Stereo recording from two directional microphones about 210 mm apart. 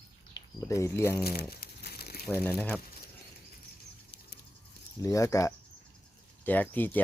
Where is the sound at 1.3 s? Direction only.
45° left (ahead or behind).